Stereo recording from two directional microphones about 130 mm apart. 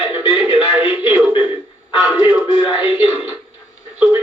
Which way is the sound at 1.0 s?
10° right (ahead or behind).